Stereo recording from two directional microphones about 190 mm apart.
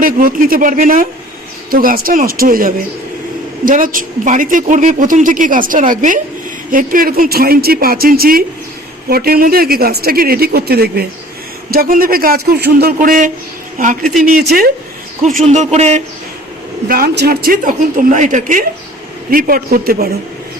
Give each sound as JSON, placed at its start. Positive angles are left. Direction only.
{"t": 0.0, "sound": "speech", "side_deg": -50}
{"t": 15.4, "sound": "speech", "side_deg": -35}
{"t": 16.9, "sound": "speech", "side_deg": -50}